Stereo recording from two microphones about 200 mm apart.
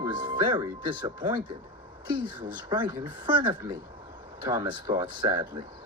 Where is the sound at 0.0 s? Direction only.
20° right (ahead or behind).